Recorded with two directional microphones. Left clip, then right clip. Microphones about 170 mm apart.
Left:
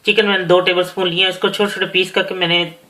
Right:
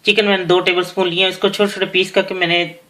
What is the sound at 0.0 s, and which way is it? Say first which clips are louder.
Speech: even; 35° right (ahead or behind).